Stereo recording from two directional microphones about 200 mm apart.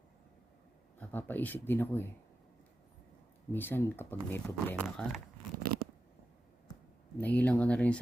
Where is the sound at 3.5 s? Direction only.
10° left (ahead or behind).